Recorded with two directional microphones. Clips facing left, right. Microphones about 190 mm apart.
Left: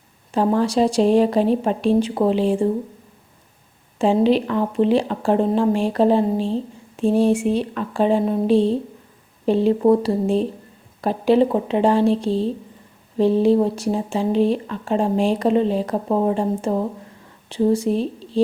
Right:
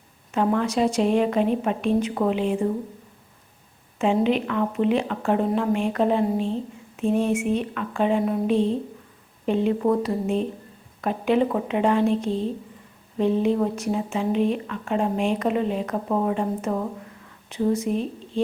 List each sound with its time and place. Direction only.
0.3 s speech: 30° left (ahead or behind)
3.9 s speech: 35° left (ahead or behind)